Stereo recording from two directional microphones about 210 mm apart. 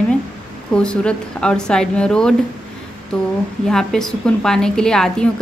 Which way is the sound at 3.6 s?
Centre (ahead or behind).